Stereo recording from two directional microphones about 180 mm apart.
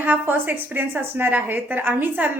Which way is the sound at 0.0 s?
10° right (ahead or behind).